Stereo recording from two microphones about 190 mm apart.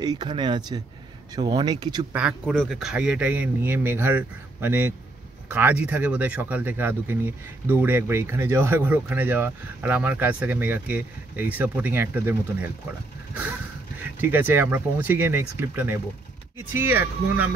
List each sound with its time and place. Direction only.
0.0 s speech: 20° right (ahead or behind)
2.1 s speech: 5° right (ahead or behind)
13.9 s speech: 10° right (ahead or behind)